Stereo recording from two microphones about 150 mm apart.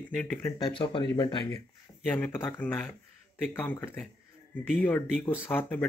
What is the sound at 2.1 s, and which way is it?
Speech, 10° left (ahead or behind).